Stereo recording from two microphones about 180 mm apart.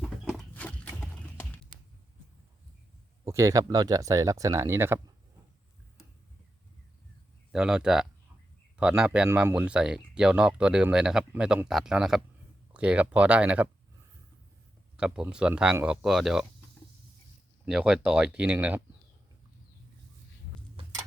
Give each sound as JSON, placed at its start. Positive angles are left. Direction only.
{"t": 0.5, "sound": "horse", "side_deg": 10}
{"t": 3.2, "sound": "speech", "side_deg": -15}
{"t": 7.5, "sound": "speech", "side_deg": -5}
{"t": 14.9, "sound": "speech", "side_deg": -5}
{"t": 17.7, "sound": "speech", "side_deg": -5}